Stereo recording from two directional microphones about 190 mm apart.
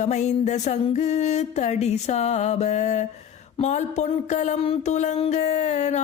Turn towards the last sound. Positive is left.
turn(degrees=40)  # may be behind; listen again after turning